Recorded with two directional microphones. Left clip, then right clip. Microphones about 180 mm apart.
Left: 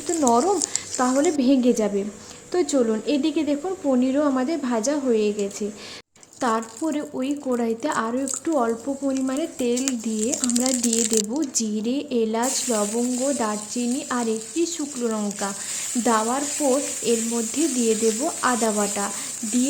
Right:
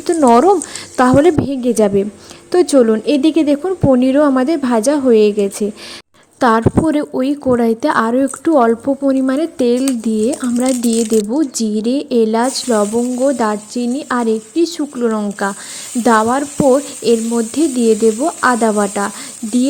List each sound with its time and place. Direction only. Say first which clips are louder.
0.2 s a woman's voice: right 10 dB; 45° right (ahead or behind)